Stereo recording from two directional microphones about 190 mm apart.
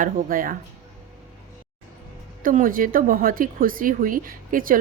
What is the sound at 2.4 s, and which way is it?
A woman's voice, 45° right (ahead or behind).